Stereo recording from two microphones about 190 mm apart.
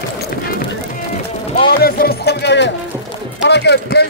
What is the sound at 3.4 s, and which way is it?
Run, 60° left (ahead or behind).